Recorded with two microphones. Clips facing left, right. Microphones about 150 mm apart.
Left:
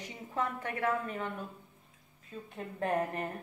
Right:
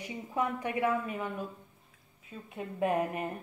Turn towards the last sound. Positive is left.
turn(degrees=-10)  # may be behind; listen again after turning